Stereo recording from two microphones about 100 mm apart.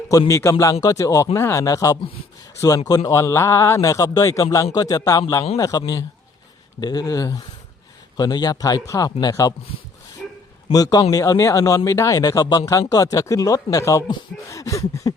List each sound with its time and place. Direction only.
0.1 s a man's voice: 35° left (ahead or behind)
10.2 s bow-wow: 5° left (ahead or behind)
10.7 s a man's voice: 40° left (ahead or behind)